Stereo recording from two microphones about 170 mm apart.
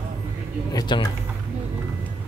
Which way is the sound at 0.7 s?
25° left (ahead or behind).